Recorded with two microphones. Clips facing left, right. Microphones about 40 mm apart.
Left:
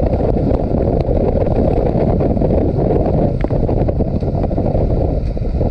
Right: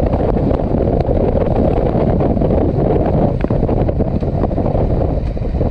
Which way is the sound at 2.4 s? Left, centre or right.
Right.